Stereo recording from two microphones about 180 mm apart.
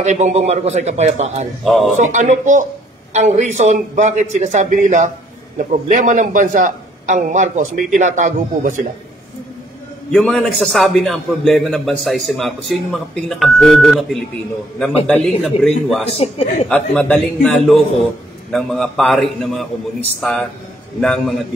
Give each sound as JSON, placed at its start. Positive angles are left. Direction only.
{"t": 0.0, "sound": "a man's voice", "side_deg": -40}
{"t": 1.6, "sound": "a man's voice", "side_deg": 0}
{"t": 2.0, "sound": "a man's voice", "side_deg": -40}
{"t": 10.1, "sound": "a man's voice", "side_deg": 0}
{"t": 15.2, "sound": "a man's voice", "side_deg": 0}
{"t": 16.2, "sound": "speech", "side_deg": 35}
{"t": 16.6, "sound": "a man's voice", "side_deg": 5}